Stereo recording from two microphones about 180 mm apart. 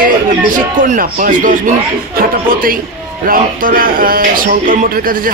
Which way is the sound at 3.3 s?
50° right (ahead or behind).